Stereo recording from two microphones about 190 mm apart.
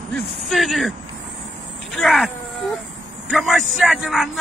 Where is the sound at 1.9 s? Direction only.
Centre (ahead or behind).